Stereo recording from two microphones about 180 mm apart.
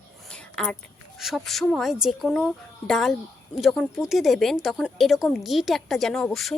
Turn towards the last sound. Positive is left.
turn(degrees=5)  # may be behind; listen again after turning